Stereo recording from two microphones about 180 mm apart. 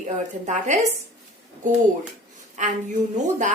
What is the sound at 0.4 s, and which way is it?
A woman's voice, 40° right (ahead or behind).